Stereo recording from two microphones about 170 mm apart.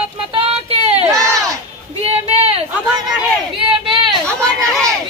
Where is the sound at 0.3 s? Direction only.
35° right (ahead or behind).